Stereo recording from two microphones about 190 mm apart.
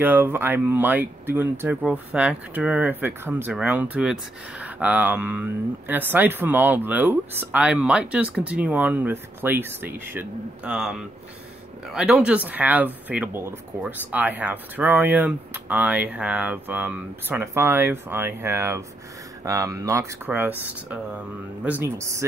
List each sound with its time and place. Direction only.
0.0 s speech: 10° right (ahead or behind)